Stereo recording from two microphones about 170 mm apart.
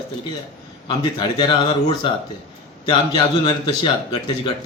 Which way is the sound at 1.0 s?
25° left (ahead or behind).